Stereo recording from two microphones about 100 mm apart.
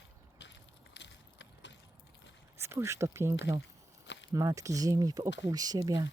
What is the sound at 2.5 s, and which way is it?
Speech, 25° right (ahead or behind).